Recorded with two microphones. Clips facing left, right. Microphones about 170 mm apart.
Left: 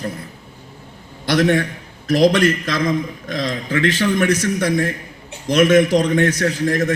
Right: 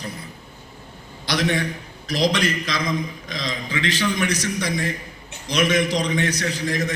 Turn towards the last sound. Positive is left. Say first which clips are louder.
# left 6 dB
turn(degrees=50)  # may be behind; listen again after turning